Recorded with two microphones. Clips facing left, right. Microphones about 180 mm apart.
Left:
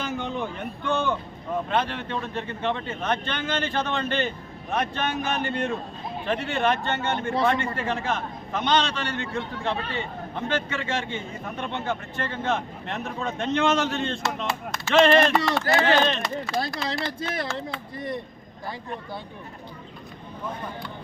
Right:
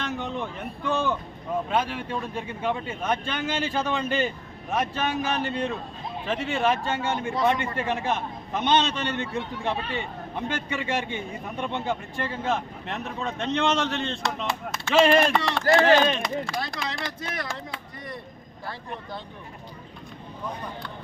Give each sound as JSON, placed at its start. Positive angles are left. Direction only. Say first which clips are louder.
{"t": 0.0, "sound": "a sound", "louder": "left 1 dB", "side_deg": 0}
{"t": 1.7, "sound": "a man's voice", "louder": "left 1 dB", "side_deg": -10}
{"t": 15.6, "sound": "speech", "louder": "right 7 dB", "side_deg": -40}
{"t": 16.5, "sound": "speech", "louder": "left 4 dB", "side_deg": 5}
{"t": 17.1, "sound": "speech", "louder": "left 4 dB", "side_deg": 25}